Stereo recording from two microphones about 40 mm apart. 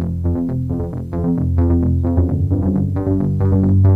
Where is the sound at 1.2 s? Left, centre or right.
Centre.